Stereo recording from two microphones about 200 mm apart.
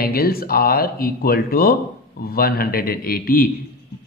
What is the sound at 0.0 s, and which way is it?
Speech, 50° left (ahead or behind).